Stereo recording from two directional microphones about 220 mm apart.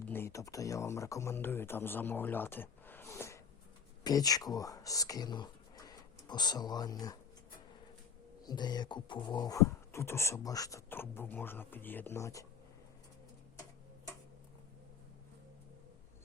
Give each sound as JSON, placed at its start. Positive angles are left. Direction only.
{"t": 0.0, "sound": "speech", "side_deg": 10}
{"t": 8.4, "sound": "speech", "side_deg": 20}